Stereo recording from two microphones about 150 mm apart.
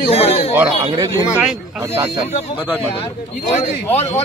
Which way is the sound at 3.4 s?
50° left (ahead or behind).